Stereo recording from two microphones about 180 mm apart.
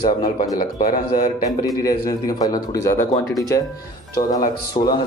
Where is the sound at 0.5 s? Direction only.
50° left (ahead or behind).